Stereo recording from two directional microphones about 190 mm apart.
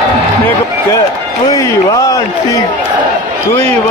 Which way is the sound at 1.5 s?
15° left (ahead or behind).